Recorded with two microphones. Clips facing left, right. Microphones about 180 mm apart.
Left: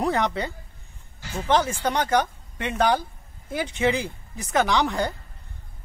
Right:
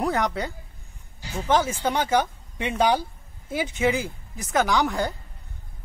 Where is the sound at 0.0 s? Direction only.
Centre (ahead or behind).